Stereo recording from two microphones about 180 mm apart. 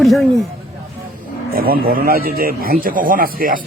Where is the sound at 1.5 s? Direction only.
55° right (ahead or behind).